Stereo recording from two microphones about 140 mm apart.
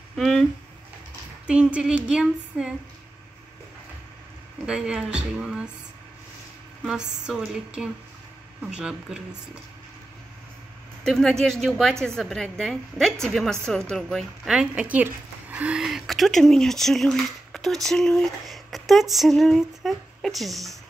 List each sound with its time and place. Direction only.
0.1 s speech: centre (ahead or behind)
1.5 s female singing: 10° right (ahead or behind)
4.6 s female singing: 5° right (ahead or behind)
6.8 s a woman's voice: 5° right (ahead or behind)
11.1 s a woman's voice: 5° left (ahead or behind)